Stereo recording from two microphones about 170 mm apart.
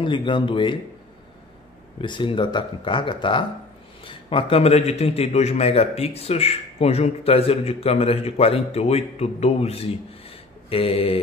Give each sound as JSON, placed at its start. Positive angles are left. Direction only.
{"t": 0.0, "sound": "speech", "side_deg": 30}
{"t": 2.0, "sound": "a man's voice", "side_deg": 30}